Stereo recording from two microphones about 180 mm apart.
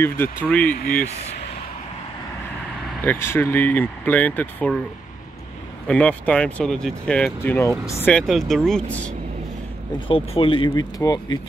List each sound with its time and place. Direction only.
0.0 s speech: 10° left (ahead or behind)
3.0 s speech: 10° left (ahead or behind)
5.9 s speech: 5° left (ahead or behind)
9.9 s speech: 30° left (ahead or behind)